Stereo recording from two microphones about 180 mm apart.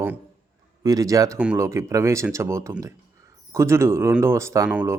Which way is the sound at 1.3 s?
5° right (ahead or behind).